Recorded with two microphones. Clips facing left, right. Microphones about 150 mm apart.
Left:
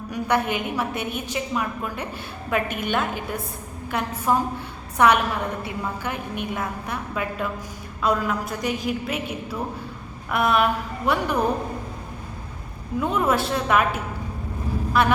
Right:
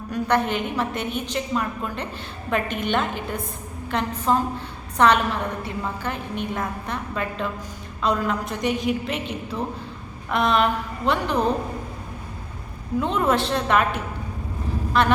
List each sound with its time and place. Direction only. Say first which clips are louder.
0.1 s a woman's voice: right 1 dB; 10° left (ahead or behind)
13.0 s a woman's voice: even; 5° left (ahead or behind)